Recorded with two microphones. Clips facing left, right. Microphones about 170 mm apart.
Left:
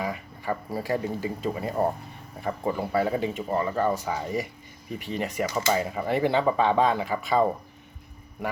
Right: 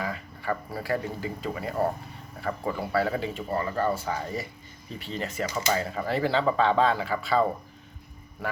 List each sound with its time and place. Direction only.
0.0 s speech: 15° left (ahead or behind)